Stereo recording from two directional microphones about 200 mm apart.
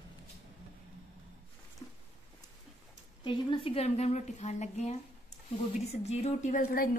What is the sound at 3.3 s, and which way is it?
A woman's voice, 25° left (ahead or behind).